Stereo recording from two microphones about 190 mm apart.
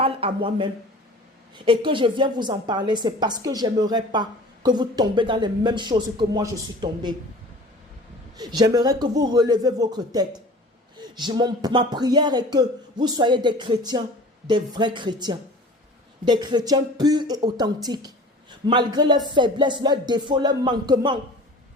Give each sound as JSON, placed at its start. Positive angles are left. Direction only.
{"t": 0.0, "sound": "a woman's voice", "side_deg": -30}
{"t": 8.4, "sound": "a woman's voice", "side_deg": -20}